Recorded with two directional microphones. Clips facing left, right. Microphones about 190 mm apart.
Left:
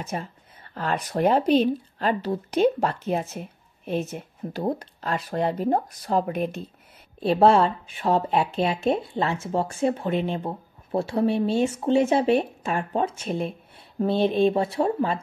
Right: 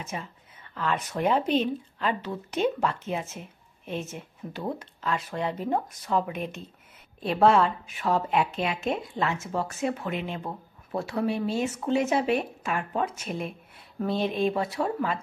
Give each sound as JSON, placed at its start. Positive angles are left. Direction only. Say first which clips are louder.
{"t": 0.0, "sound": "speech", "louder": "left 5 dB", "side_deg": 35}
{"t": 7.2, "sound": "speech", "louder": "left 3 dB", "side_deg": 30}